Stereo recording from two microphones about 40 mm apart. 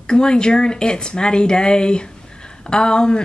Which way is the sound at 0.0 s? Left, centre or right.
Left.